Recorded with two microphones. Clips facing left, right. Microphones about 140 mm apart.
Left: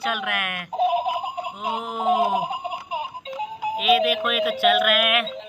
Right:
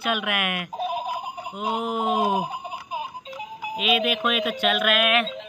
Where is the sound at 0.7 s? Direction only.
20° left (ahead or behind).